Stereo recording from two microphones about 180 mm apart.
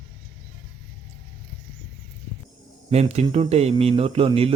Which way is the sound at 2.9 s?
35° right (ahead or behind).